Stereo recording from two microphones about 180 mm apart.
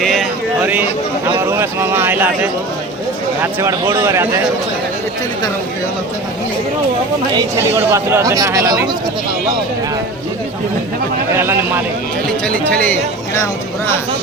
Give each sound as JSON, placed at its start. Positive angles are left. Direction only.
{"t": 0.0, "sound": "a sound", "side_deg": 0}
{"t": 0.6, "sound": "speech", "side_deg": -10}
{"t": 7.3, "sound": "speech", "side_deg": -15}
{"t": 12.5, "sound": "speech", "side_deg": 10}